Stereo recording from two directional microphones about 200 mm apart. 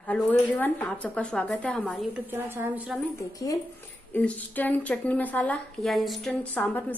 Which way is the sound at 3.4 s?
15° left (ahead or behind).